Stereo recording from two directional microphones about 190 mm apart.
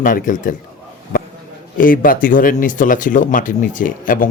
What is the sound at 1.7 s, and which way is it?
Speech, 45° left (ahead or behind).